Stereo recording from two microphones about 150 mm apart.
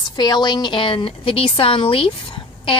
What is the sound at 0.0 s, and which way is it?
A woman's voice, 30° left (ahead or behind).